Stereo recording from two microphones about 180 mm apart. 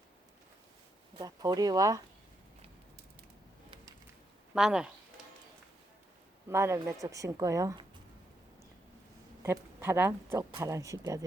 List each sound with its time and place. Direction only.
1.2 s speech: 20° right (ahead or behind)
4.5 s speech: 5° right (ahead or behind)
6.5 s speech: 15° right (ahead or behind)
9.4 s speech: 15° right (ahead or behind)